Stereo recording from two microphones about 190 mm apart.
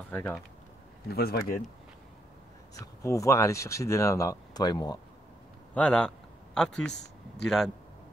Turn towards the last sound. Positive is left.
turn(degrees=0)  # may be behind; listen again after turning